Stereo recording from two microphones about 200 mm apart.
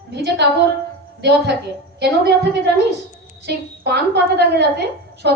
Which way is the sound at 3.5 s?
55° right (ahead or behind).